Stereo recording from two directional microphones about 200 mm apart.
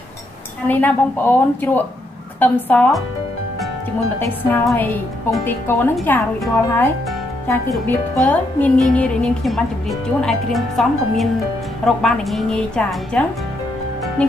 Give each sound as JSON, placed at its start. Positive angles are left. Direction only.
{"t": 0.7, "sound": "a woman's voice", "side_deg": 10}
{"t": 4.4, "sound": "a woman's voice", "side_deg": 10}